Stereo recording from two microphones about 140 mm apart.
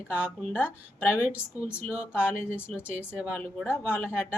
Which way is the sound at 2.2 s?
15° left (ahead or behind).